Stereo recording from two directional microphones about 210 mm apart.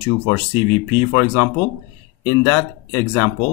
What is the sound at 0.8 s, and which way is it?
Speech, 15° left (ahead or behind).